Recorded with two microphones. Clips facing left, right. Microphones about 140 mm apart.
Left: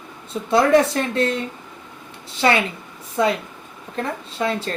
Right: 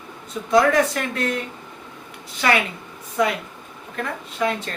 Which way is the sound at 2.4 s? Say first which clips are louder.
Left 2 dB; 30° left (ahead or behind).